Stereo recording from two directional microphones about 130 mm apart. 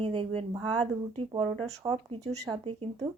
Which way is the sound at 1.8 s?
25° right (ahead or behind).